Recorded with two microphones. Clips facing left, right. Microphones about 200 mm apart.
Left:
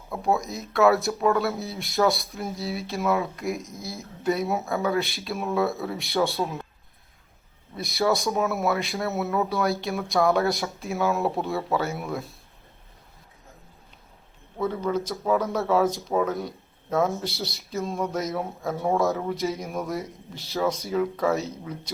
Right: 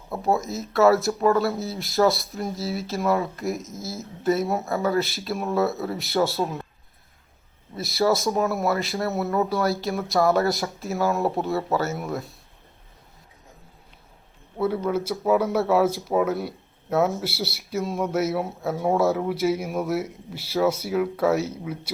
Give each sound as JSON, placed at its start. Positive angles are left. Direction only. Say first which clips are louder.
{"t": 0.1, "sound": "speech", "louder": "right 1 dB", "side_deg": 0}
{"t": 7.8, "sound": "speech", "louder": "right 2 dB", "side_deg": 0}
{"t": 14.6, "sound": "speech", "louder": "right 2 dB", "side_deg": -5}